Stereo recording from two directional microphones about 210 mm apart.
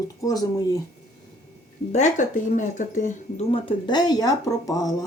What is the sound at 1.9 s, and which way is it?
Speech, 35° left (ahead or behind).